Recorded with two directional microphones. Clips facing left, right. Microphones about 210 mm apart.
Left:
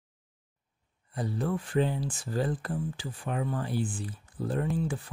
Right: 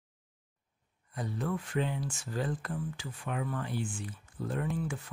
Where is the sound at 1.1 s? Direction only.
35° left (ahead or behind).